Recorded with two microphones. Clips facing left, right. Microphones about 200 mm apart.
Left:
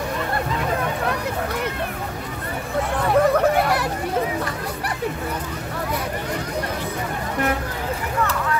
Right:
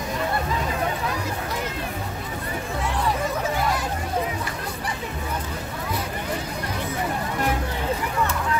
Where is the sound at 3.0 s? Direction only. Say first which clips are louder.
Left 10 dB; 65° left (ahead or behind).